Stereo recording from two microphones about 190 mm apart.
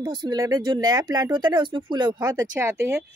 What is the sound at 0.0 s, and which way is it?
Speech, 20° right (ahead or behind).